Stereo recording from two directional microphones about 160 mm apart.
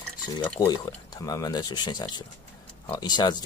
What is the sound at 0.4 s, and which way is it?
Speech, 20° left (ahead or behind).